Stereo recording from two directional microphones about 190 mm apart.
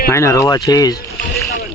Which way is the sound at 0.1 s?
15° left (ahead or behind).